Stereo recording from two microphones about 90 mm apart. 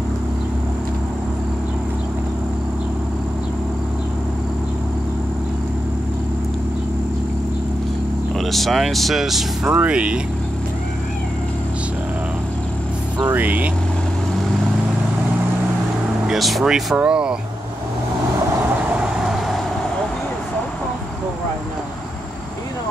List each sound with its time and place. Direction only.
8.4 s speech: centre (ahead or behind)
9.8 s speech: 15° right (ahead or behind)
13.2 s speech: 20° right (ahead or behind)
16.3 s speech: centre (ahead or behind)
18.9 s vehicle: 5° right (ahead or behind)